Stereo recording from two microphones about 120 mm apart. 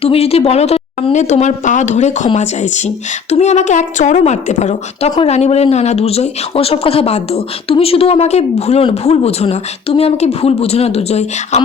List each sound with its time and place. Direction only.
0.0 s a woman's voice: 55° left (ahead or behind); by 5.1 s 75° left (ahead or behind)
5.2 s speech: 65° left (ahead or behind)